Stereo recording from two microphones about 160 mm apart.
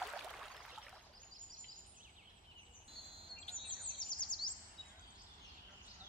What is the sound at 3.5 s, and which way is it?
Chirp, 45° left (ahead or behind).